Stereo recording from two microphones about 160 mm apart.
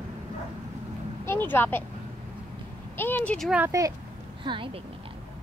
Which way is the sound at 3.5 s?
15° right (ahead or behind).